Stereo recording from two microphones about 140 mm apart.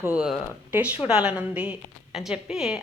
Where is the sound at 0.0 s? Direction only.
10° right (ahead or behind).